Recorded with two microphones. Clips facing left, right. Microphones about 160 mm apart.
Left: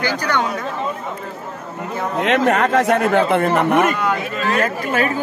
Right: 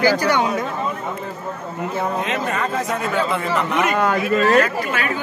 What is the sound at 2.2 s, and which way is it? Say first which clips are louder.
Speech: left 7 dB; 80° left.